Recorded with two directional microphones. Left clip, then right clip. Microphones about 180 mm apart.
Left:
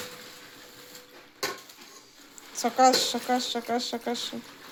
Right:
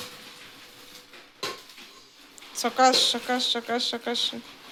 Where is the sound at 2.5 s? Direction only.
10° left (ahead or behind).